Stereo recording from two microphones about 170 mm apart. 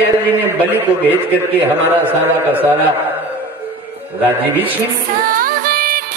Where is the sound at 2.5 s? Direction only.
10° right (ahead or behind).